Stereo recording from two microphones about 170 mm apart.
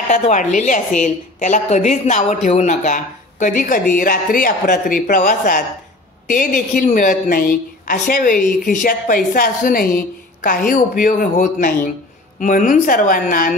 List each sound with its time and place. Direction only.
0.1 s a woman's voice: 45° left (ahead or behind)